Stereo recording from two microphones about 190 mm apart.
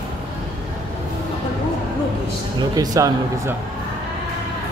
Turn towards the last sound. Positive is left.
turn(degrees=-20)  # may be behind; listen again after turning